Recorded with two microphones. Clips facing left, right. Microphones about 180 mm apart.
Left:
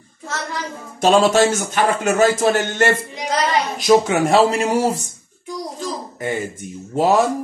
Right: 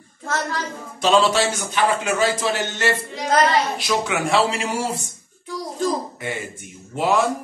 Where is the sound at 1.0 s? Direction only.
50° left (ahead or behind).